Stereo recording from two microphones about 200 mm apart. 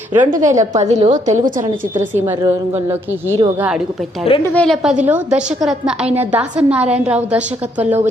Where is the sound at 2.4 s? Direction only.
15° right (ahead or behind).